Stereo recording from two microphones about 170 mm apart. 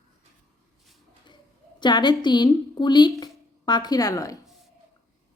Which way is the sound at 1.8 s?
25° left (ahead or behind).